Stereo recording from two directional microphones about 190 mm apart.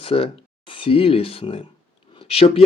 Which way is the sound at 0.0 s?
30° left (ahead or behind).